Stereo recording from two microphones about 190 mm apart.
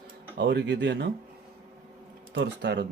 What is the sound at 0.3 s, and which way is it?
Speech, 65° right (ahead or behind).